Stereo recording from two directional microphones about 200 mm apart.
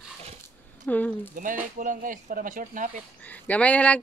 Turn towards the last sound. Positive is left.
turn(degrees=5)  # may be behind; listen again after turning